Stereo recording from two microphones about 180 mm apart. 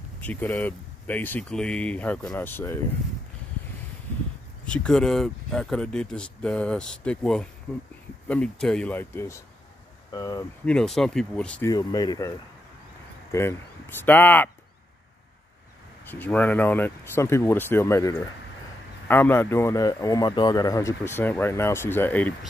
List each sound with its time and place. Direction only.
0.2 s speech: 10° left (ahead or behind)
4.6 s speech: 5° left (ahead or behind)
10.6 s speech: 5° left (ahead or behind)
11.7 s speech: 20° left (ahead or behind)
13.3 s speech: 15° left (ahead or behind)
16.1 s speech: 10° left (ahead or behind)